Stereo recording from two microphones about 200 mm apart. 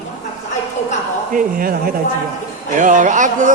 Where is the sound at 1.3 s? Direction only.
45° right (ahead or behind).